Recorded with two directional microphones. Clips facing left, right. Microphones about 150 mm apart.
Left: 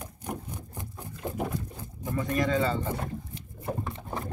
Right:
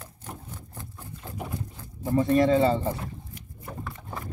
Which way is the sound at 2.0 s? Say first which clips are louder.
Right 7 dB; 30° right (ahead or behind).